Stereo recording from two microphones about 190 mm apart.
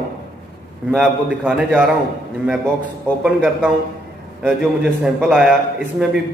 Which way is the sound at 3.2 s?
5° right (ahead or behind).